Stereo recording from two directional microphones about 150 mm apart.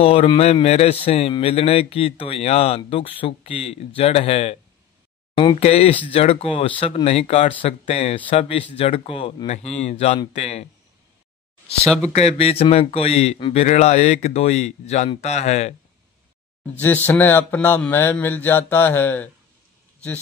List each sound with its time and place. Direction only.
0.0 s speech: 40° left (ahead or behind)
5.6 s speech: 45° left (ahead or behind)
12.1 s speech: 45° left (ahead or behind)
16.8 s speech: 15° left (ahead or behind)